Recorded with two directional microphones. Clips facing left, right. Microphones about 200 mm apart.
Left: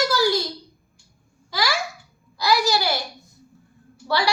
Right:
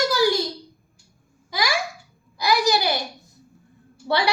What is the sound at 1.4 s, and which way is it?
Babbling, 15° right (ahead or behind).